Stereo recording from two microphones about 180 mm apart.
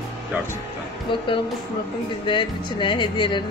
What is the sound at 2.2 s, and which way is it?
Music, 25° left (ahead or behind).